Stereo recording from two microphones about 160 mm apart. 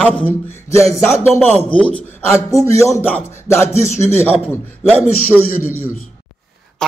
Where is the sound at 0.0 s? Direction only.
10° left (ahead or behind).